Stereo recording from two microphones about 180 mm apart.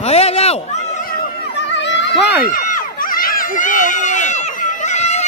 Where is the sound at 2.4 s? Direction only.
50° left (ahead or behind).